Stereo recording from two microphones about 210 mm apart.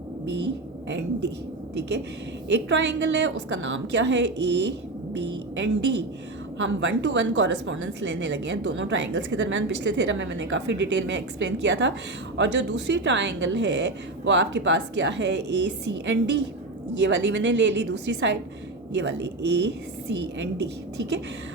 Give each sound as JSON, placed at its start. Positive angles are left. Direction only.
{"t": 2.5, "sound": "a woman's voice", "side_deg": -60}
{"t": 6.6, "sound": "a woman's voice", "side_deg": -60}